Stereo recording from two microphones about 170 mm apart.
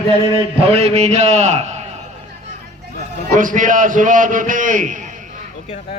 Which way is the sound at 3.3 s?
50° right (ahead or behind).